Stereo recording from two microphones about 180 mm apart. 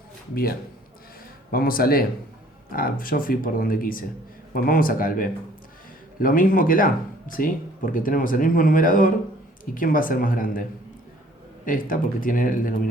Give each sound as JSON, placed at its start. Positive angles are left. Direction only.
{"t": 1.5, "sound": "speech", "side_deg": 55}